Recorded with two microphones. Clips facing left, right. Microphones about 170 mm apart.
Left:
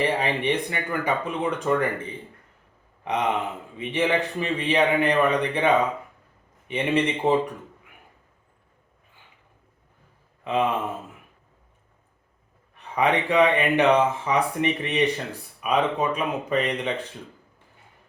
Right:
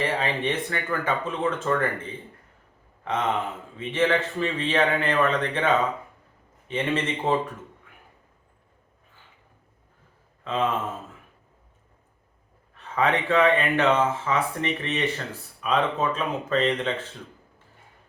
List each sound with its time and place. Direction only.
0.0 s speech: 15° left (ahead or behind)
3.0 s speech: 15° left (ahead or behind)
10.4 s speech: 15° left (ahead or behind)
12.7 s speech: 15° left (ahead or behind)